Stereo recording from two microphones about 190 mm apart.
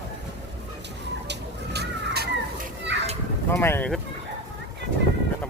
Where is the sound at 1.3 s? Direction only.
60° right (ahead or behind).